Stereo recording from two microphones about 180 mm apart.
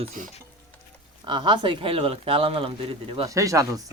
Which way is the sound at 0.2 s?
45° right (ahead or behind).